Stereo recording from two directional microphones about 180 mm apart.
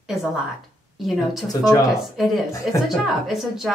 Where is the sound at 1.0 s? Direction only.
Centre (ahead or behind).